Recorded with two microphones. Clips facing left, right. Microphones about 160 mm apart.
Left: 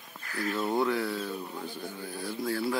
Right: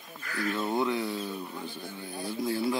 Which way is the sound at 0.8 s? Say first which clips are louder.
Left 1 dB; 20° right (ahead or behind).